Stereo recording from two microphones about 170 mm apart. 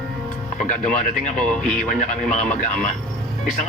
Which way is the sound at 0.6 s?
45° left (ahead or behind).